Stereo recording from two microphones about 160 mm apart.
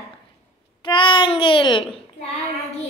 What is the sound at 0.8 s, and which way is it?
Child singing, 30° left (ahead or behind).